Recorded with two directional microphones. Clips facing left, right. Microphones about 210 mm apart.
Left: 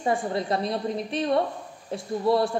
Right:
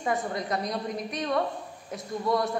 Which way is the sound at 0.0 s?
30° left (ahead or behind).